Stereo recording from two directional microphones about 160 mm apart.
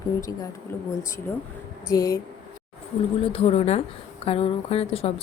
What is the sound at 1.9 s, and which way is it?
Speech, 20° left (ahead or behind).